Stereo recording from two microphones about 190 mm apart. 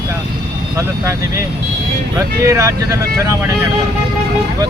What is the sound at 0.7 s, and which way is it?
Speech, 15° right (ahead or behind).